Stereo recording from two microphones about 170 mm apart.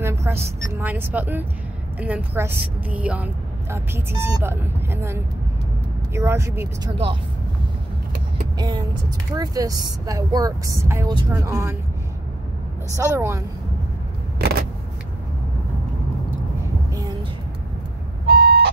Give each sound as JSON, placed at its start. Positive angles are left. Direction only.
{"t": 0.0, "sound": "a woman's voice", "side_deg": -15}
{"t": 8.5, "sound": "speech", "side_deg": -25}
{"t": 12.9, "sound": "speech", "side_deg": -15}
{"t": 14.4, "sound": "vehicle", "side_deg": -65}
{"t": 18.2, "sound": "vehicle", "side_deg": -70}